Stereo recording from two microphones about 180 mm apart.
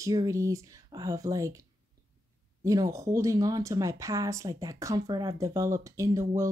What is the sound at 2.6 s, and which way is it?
Speech, 20° right (ahead or behind).